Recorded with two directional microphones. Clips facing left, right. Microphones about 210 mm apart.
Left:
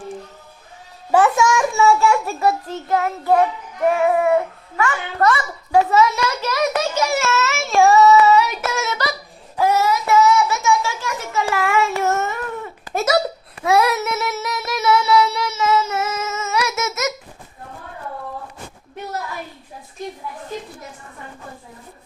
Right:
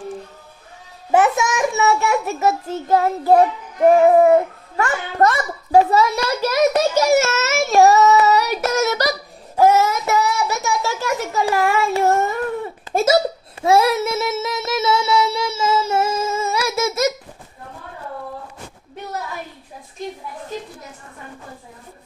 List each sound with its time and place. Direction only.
1.1 s a child's voice: 20° right (ahead or behind); by 9.1 s 40° right (ahead or behind)
9.6 s child singing: 50° right (ahead or behind)
11.9 s babbling: 35° right (ahead or behind)